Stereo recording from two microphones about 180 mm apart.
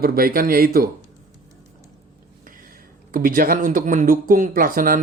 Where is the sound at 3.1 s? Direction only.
50° right (ahead or behind).